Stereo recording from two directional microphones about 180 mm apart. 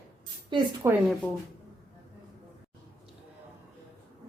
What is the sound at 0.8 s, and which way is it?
Speech, 15° right (ahead or behind).